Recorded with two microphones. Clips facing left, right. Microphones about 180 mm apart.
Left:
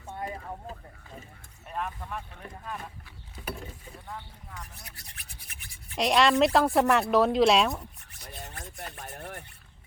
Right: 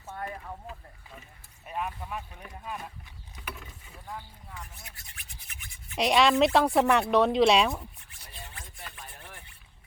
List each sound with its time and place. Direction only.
0.1 s a sound: 20° left (ahead or behind)
1.6 s speech: 5° right (ahead or behind)
3.4 s speech: 30° left (ahead or behind)
4.8 s toothbrush: 40° left (ahead or behind)
6.0 s speech: centre (ahead or behind)
8.3 s a sound: 40° left (ahead or behind)